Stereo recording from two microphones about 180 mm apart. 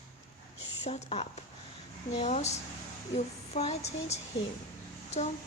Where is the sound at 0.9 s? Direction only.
35° left (ahead or behind).